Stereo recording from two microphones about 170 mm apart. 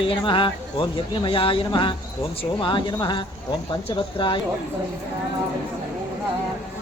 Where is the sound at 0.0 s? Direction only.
30° left (ahead or behind).